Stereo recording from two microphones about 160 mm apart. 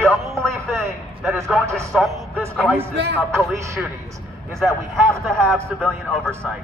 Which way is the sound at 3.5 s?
20° right (ahead or behind).